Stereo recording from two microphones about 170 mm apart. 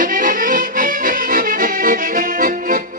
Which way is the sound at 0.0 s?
50° right (ahead or behind).